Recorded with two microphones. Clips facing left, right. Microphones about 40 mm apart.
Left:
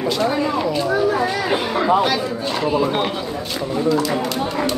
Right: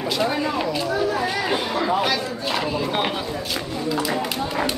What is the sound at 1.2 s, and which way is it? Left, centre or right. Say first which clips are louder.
Chatter: left 3 dB; centre.